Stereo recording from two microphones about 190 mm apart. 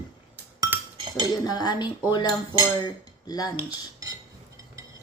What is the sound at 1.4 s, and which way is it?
A woman's voice, 20° left (ahead or behind).